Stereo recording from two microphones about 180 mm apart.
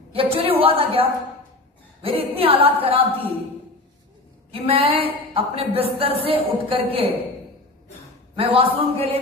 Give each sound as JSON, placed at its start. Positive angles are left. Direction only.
{"t": 0.1, "sound": "a woman's voice", "side_deg": -30}
{"t": 4.6, "sound": "a woman's voice", "side_deg": -30}
{"t": 8.4, "sound": "a woman's voice", "side_deg": -30}